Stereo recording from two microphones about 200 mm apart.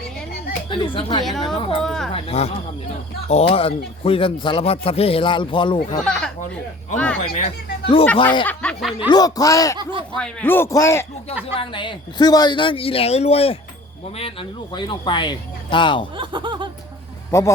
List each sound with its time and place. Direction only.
0.7 s a man's voice: 25° left (ahead or behind)
1.2 s speech: centre (ahead or behind)
1.5 s a man's voice: 25° left (ahead or behind)
1.8 s speech: centre (ahead or behind)
2.1 s a man's voice: 30° left (ahead or behind)
6.1 s speech: 5° left (ahead or behind)
7.2 s a man's voice: 30° left (ahead or behind)
8.4 s speech: centre (ahead or behind)
9.0 s a man's voice: 20° left (ahead or behind)
11.5 s a man's voice: 25° left (ahead or behind)
16.1 s speech: 25° right (ahead or behind)
17.3 s a man's voice: 15° left (ahead or behind)